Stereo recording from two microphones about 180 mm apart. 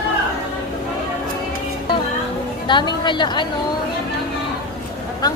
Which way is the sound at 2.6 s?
25° left (ahead or behind).